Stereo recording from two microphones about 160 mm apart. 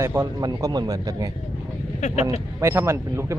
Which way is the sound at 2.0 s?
45° left (ahead or behind).